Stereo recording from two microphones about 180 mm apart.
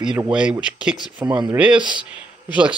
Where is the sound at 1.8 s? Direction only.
25° right (ahead or behind).